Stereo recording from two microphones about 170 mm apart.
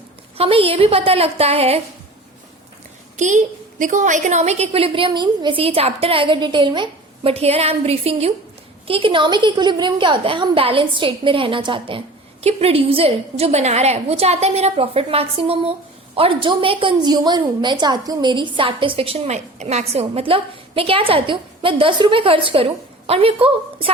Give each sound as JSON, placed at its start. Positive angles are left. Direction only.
{"t": 0.3, "sound": "a woman's voice", "side_deg": -35}
{"t": 3.2, "sound": "a woman's voice", "side_deg": -45}